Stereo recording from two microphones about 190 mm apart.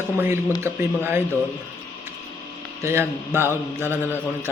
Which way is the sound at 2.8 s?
15° right (ahead or behind).